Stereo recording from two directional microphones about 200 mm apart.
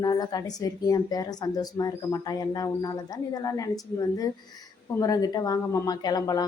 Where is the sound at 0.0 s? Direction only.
20° left (ahead or behind).